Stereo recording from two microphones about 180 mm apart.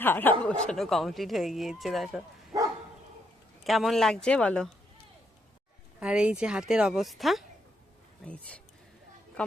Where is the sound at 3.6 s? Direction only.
Centre (ahead or behind).